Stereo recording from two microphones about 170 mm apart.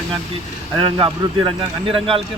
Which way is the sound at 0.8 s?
25° right (ahead or behind).